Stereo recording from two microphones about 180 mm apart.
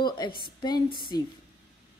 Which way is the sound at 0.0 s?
25° left (ahead or behind).